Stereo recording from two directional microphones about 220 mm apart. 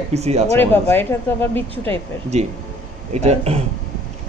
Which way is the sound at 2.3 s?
30° right (ahead or behind).